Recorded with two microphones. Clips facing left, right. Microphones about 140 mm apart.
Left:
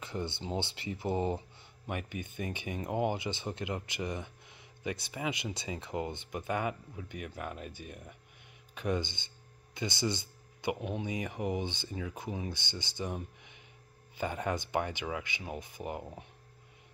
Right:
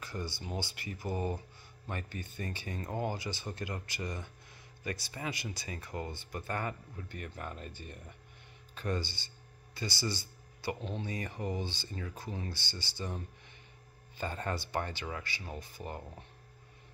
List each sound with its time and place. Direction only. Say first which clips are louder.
0.0 s speech: left 3 dB; 25° left (ahead or behind)